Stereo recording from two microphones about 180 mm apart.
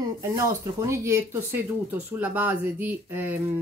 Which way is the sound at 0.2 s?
15° right (ahead or behind).